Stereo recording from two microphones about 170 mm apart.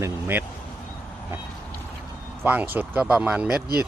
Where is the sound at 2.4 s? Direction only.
10° right (ahead or behind).